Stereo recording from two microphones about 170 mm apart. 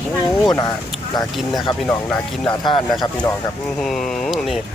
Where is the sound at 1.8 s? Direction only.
10° left (ahead or behind).